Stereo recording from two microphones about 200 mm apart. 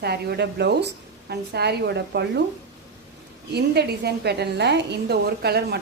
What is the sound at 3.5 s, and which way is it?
A woman's voice, 55° right (ahead or behind).